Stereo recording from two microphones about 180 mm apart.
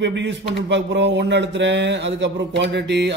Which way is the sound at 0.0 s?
80° right.